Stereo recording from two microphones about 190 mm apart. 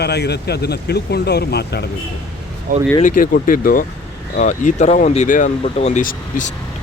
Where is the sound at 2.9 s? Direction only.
45° left (ahead or behind).